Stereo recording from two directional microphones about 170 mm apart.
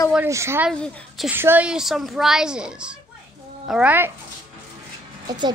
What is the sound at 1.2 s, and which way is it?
A child's voice, 10° right (ahead or behind).